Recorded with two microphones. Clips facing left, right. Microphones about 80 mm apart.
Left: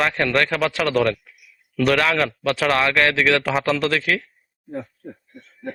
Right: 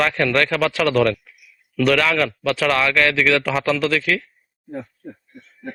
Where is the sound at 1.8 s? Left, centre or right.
Left.